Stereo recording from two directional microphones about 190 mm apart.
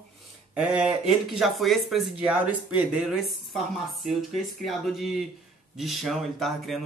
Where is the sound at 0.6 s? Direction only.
5° right (ahead or behind).